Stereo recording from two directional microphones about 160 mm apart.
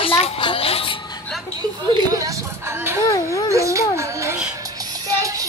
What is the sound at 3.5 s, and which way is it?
Speech, 20° right (ahead or behind).